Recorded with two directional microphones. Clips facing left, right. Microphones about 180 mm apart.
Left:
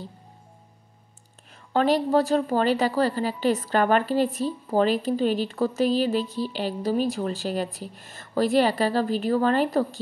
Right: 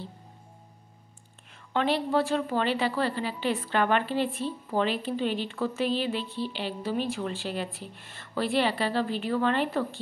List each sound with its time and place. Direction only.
1.7 s a woman's voice: 40° left (ahead or behind)